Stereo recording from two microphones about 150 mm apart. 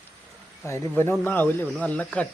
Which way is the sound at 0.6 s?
15° left (ahead or behind).